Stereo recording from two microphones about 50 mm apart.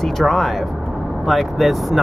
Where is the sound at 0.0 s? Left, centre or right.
Centre.